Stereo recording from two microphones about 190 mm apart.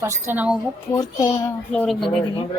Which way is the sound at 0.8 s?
20° left (ahead or behind).